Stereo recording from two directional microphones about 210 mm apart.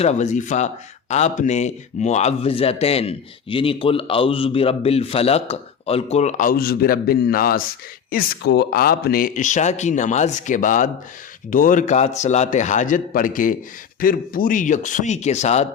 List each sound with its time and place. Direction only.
0.0 s a man's voice: 35° left (ahead or behind)